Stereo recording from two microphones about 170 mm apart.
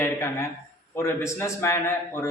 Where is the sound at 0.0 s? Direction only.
15° left (ahead or behind).